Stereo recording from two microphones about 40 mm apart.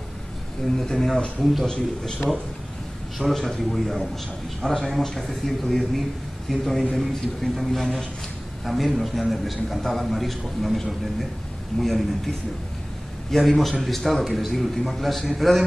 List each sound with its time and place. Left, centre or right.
0.7 s speech: centre
1.4 s a man's voice: centre
3.2 s a man's voice: centre
13.4 s a man's voice: centre